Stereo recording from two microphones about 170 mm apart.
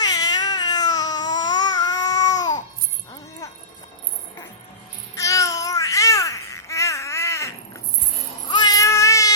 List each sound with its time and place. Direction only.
0.0 s babbling: 25° left (ahead or behind)
5.1 s babbling: 20° left (ahead or behind)
8.4 s a sound: 25° left (ahead or behind)